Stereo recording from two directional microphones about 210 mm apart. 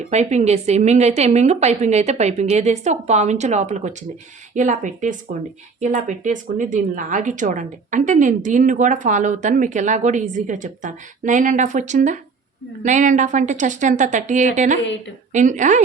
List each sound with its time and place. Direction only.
0.1 s speech: 35° right (ahead or behind)